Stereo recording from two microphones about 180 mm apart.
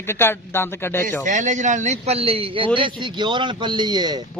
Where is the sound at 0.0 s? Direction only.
15° left (ahead or behind).